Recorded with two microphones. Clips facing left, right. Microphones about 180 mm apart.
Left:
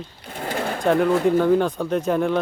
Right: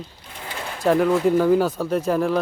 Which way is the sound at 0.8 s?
Centre (ahead or behind).